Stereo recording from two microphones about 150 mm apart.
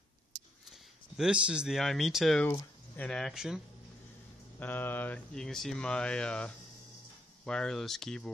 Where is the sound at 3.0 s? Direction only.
Centre (ahead or behind).